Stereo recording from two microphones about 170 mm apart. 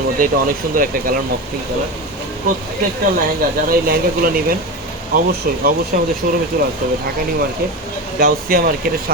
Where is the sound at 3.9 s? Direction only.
60° right (ahead or behind).